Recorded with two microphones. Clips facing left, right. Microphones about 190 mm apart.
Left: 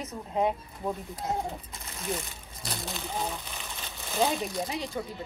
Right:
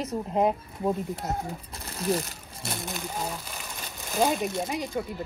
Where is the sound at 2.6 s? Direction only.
Centre (ahead or behind).